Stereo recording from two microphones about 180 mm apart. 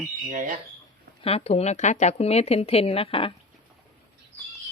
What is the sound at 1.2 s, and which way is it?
Speech, 35° left (ahead or behind).